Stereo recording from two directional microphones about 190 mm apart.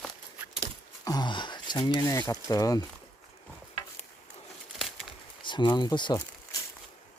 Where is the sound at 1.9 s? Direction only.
15° left (ahead or behind).